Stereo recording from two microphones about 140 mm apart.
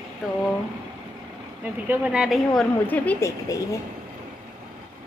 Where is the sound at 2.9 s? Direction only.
15° left (ahead or behind).